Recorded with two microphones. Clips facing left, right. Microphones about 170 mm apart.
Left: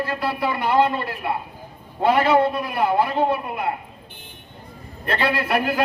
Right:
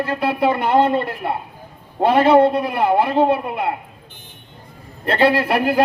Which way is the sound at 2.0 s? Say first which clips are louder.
Right 5 dB; 25° right (ahead or behind).